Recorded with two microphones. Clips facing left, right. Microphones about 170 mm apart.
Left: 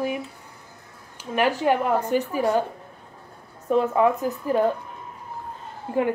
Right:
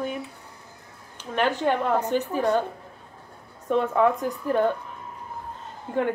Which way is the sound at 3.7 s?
5° left (ahead or behind).